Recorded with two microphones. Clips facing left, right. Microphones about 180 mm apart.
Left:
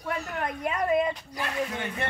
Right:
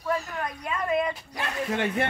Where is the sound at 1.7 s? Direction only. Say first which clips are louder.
Right 7 dB; 80° right.